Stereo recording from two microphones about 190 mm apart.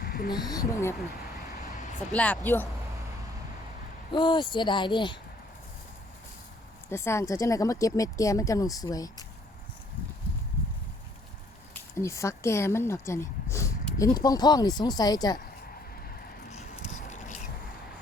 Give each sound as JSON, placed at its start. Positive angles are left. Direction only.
{"t": 0.0, "sound": "a sound", "side_deg": 55}
{"t": 0.3, "sound": "speech", "side_deg": 20}
{"t": 2.1, "sound": "speech", "side_deg": 5}
{"t": 4.1, "sound": "speech", "side_deg": 25}
{"t": 6.9, "sound": "speech", "side_deg": 15}
{"t": 11.7, "sound": "speech", "side_deg": 15}
{"t": 16.5, "sound": "a sound", "side_deg": 35}
{"t": 17.1, "sound": "vehicle", "side_deg": 40}